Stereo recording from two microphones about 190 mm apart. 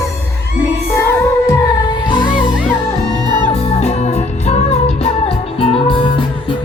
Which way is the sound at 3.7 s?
35° left (ahead or behind).